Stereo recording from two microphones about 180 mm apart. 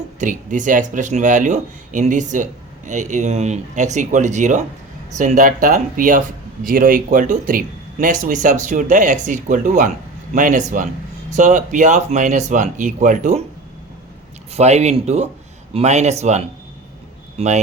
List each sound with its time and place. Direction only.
0.2 s speech: 45° right (ahead or behind)
14.5 s speech: 35° right (ahead or behind)